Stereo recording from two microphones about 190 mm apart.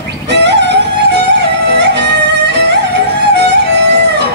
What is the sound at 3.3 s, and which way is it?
Music, 65° right (ahead or behind).